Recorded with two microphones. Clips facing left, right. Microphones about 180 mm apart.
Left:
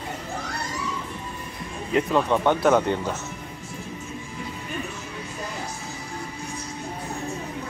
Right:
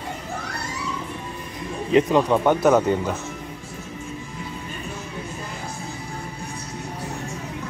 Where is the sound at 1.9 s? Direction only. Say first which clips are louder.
Right 4 dB; 20° right (ahead or behind).